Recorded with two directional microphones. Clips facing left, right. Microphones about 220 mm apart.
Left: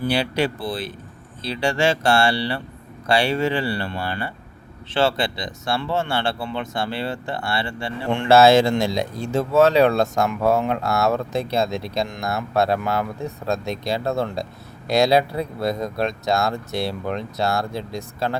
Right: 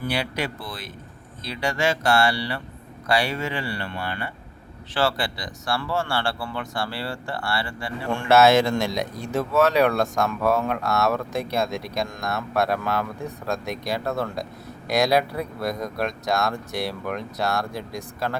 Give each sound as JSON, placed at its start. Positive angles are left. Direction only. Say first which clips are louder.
{"t": 0.0, "sound": "speech", "louder": "left 6 dB", "side_deg": 30}